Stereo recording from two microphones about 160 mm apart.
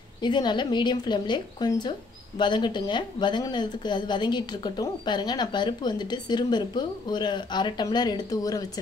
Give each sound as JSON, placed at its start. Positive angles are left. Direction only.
{"t": 0.2, "sound": "a woman's voice", "side_deg": 30}